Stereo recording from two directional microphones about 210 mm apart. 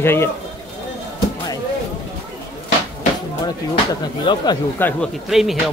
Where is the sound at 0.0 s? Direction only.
10° left (ahead or behind).